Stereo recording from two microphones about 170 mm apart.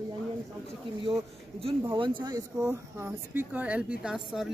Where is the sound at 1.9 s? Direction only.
30° right (ahead or behind).